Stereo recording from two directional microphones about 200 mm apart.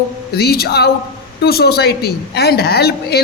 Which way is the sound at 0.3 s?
50° left (ahead or behind).